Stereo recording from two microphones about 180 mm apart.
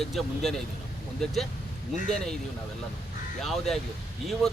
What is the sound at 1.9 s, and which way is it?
Speech, 40° left (ahead or behind).